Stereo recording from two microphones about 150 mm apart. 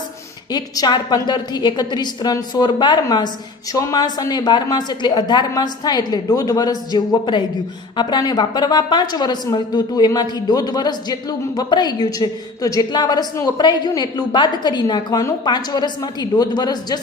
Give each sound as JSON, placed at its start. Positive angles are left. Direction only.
{"t": 0.5, "sound": "a woman's voice", "side_deg": 30}